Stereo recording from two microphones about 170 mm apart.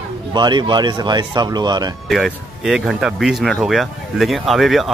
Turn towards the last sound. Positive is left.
turn(degrees=0)  # may be behind; listen again after turning